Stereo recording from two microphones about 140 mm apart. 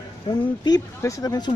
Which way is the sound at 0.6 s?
25° left (ahead or behind).